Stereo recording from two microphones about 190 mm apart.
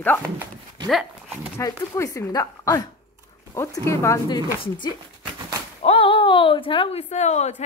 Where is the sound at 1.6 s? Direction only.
15° left (ahead or behind); by 7.5 s 35° left (ahead or behind).